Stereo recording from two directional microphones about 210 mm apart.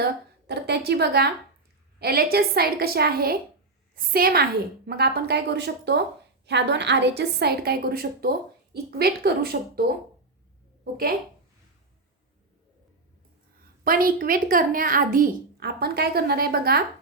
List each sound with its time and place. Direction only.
0.0 s a woman's voice: 50° right (ahead or behind)
13.8 s a woman's voice: 45° right (ahead or behind)